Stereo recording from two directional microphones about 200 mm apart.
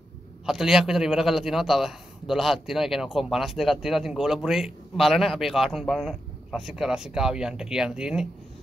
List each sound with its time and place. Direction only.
0.5 s a man's voice: centre (ahead or behind)